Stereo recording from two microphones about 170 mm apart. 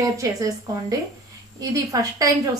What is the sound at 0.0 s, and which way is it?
A woman's voice, 20° right (ahead or behind).